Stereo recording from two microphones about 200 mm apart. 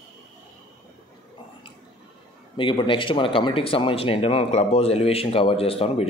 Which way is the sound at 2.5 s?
25° left (ahead or behind).